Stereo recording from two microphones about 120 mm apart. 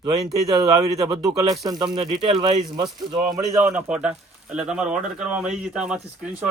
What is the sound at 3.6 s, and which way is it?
Speech, 10° right (ahead or behind).